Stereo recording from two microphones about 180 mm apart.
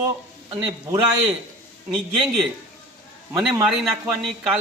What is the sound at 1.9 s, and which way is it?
Speech, centre (ahead or behind).